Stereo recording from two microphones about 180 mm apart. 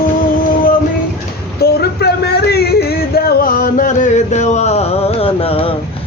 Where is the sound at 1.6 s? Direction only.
65° left (ahead or behind).